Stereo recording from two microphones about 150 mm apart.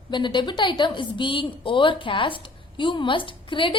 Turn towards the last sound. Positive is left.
turn(degrees=35)  # may be behind; listen again after turning